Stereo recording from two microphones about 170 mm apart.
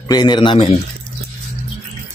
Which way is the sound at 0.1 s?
25° left (ahead or behind).